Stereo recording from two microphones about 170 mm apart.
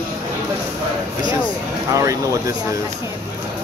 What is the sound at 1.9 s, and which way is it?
Speech, 20° right (ahead or behind).